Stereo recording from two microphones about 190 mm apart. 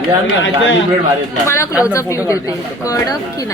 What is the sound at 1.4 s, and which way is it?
A woman's voice, 15° left (ahead or behind).